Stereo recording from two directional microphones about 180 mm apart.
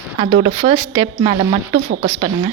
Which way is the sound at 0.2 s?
30° right (ahead or behind).